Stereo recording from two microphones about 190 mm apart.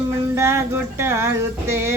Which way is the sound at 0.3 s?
15° right (ahead or behind).